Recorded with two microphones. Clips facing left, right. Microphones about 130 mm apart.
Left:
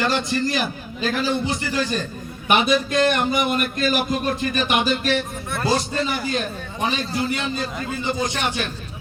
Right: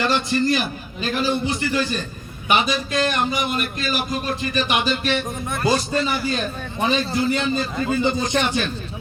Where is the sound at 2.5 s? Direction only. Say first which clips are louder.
Left 2 dB; 55° left (ahead or behind).